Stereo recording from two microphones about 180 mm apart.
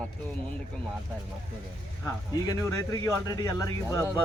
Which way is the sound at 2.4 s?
20° left (ahead or behind).